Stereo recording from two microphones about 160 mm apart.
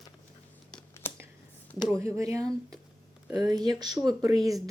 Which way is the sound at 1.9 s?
20° right (ahead or behind).